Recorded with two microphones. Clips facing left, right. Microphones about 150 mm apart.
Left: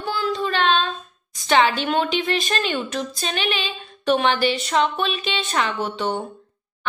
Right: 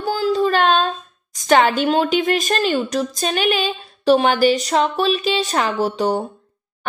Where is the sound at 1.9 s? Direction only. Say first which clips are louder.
Right 5 dB; 40° right (ahead or behind).